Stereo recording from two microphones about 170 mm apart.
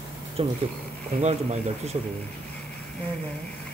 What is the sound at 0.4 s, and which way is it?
Speech, 35° right (ahead or behind).